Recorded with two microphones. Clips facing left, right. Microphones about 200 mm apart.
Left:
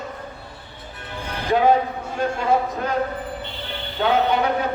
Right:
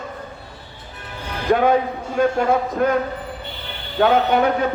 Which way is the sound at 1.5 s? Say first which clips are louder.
Right 1 dB; 55° right (ahead or behind).